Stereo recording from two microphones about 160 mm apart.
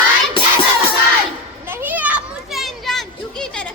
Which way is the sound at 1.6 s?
10° right (ahead or behind).